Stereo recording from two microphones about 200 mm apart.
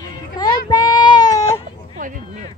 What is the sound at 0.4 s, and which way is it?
Child singing, 20° left (ahead or behind).